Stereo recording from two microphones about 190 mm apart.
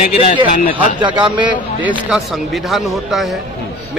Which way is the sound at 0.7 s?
25° right (ahead or behind).